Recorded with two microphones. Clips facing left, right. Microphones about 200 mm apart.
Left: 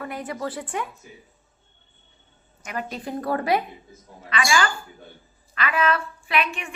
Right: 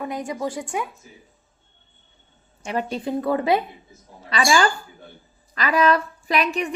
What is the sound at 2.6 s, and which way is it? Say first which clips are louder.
Speech: right 6 dB; 30° right (ahead or behind).